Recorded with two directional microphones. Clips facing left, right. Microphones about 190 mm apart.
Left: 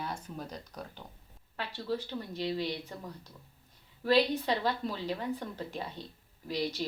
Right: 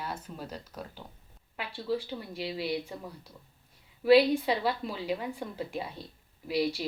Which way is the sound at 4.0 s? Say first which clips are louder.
Right 6 dB; 10° right (ahead or behind).